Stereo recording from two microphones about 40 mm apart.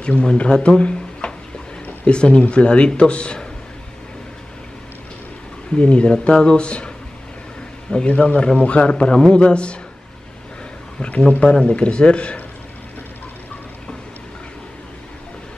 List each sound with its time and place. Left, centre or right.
0.0 s speech: left
5.8 s speech: left
8.1 s a man's voice: left
11.0 s a man's voice: left